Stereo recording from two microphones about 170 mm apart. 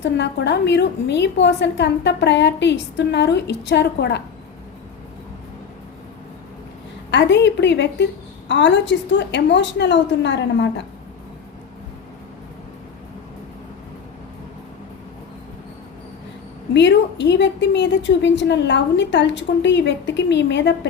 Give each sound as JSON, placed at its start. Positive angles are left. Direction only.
{"t": 0.0, "sound": "a woman's voice", "side_deg": 90}
{"t": 7.1, "sound": "a woman's voice", "side_deg": 90}
{"t": 16.7, "sound": "a woman's voice", "side_deg": 90}